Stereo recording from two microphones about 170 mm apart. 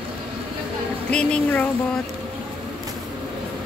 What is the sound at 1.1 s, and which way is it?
Speech, 5° left (ahead or behind).